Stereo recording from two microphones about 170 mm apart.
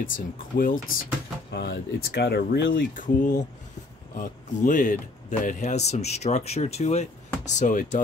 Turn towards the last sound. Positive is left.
turn(degrees=50)  # may be behind; listen again after turning